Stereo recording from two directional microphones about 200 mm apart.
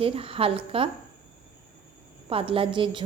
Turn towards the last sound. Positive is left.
turn(degrees=-25)  # may be behind; listen again after turning